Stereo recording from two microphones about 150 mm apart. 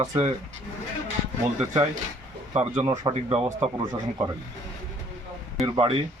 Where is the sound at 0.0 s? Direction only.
25° right (ahead or behind).